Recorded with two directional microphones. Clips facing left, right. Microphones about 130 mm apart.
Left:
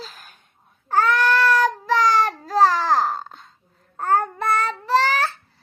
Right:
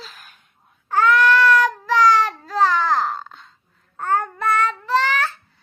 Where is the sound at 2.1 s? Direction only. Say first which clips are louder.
Right 2 dB; 40° left (ahead or behind).